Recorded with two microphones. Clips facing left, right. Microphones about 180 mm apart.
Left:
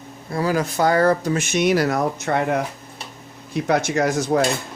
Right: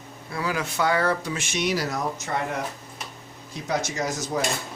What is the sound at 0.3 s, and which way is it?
Speech, 40° left (ahead or behind).